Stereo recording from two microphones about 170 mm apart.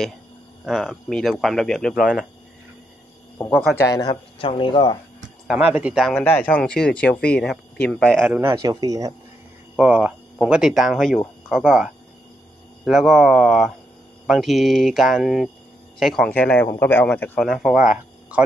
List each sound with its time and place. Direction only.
0.7 s speech: centre (ahead or behind)
3.8 s speech: 20° left (ahead or behind)
5.5 s speech: 10° right (ahead or behind)
6.2 s speech: 10° left (ahead or behind)
8.4 s speech: 20° right (ahead or behind)
9.8 s speech: 5° right (ahead or behind)